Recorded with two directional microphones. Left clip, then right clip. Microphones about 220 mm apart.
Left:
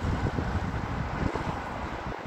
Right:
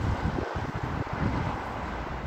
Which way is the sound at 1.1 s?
50° left (ahead or behind).